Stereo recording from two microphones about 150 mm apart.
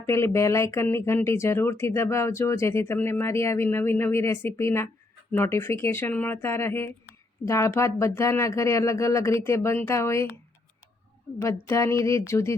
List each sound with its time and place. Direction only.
0.0 s speech: 20° left (ahead or behind)
11.7 s speech: 20° left (ahead or behind)